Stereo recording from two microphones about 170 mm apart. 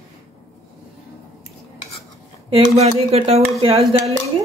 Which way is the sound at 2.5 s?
35° right (ahead or behind).